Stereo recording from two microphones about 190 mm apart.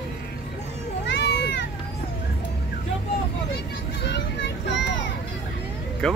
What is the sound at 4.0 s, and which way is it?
Children playing, 65° left (ahead or behind).